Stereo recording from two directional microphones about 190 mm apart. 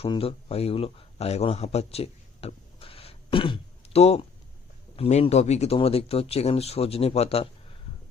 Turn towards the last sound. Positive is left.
turn(degrees=30)  # may be behind; listen again after turning